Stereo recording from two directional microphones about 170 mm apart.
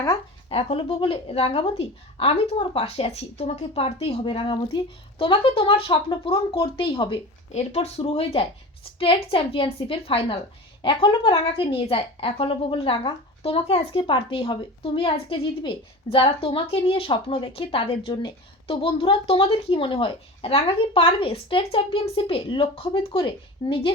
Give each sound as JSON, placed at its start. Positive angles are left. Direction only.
{"t": 0.5, "sound": "a woman's voice", "side_deg": 30}